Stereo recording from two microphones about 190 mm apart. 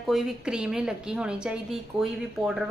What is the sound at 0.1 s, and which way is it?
A woman's voice, centre (ahead or behind).